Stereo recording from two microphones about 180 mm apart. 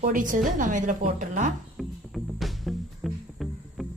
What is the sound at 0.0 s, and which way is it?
A woman's voice, 50° right (ahead or behind).